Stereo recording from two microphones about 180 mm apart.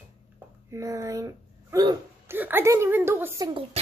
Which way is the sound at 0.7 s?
15° right (ahead or behind).